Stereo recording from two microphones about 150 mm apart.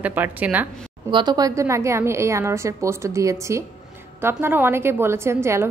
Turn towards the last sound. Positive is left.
turn(degrees=-15)  # may be behind; listen again after turning